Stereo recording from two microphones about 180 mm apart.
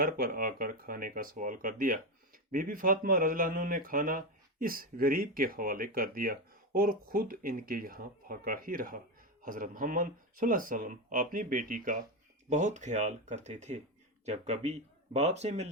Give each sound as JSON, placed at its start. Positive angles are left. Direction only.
{"t": 0.0, "sound": "speech", "side_deg": -55}